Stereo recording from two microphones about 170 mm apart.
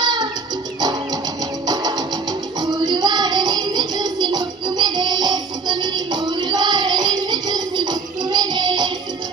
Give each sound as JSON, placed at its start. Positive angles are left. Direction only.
{"t": 0.0, "sound": "music", "side_deg": -25}
{"t": 2.6, "sound": "child singing", "side_deg": -25}